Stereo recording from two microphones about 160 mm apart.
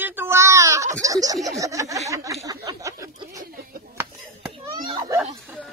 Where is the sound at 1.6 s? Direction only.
20° right (ahead or behind).